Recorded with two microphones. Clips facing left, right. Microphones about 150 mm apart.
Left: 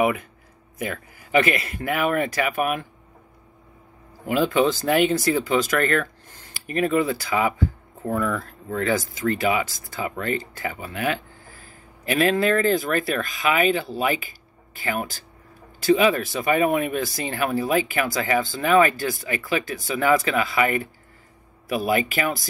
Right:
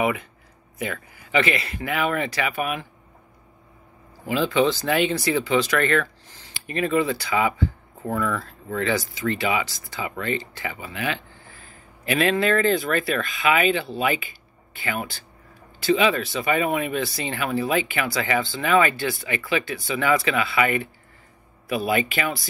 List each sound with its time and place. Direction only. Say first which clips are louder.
0.0 s speech: left 2 dB; 45° left (ahead or behind)
4.3 s speech: left 1 dB; 45° left (ahead or behind)